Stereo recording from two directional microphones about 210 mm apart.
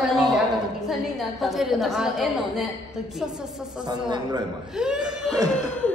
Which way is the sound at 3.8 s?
20° right (ahead or behind).